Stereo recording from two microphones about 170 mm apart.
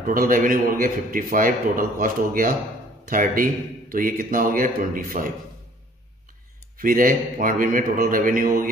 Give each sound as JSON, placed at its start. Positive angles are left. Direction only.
{"t": 0.0, "sound": "a man's voice", "side_deg": -55}
{"t": 6.8, "sound": "a man's voice", "side_deg": -55}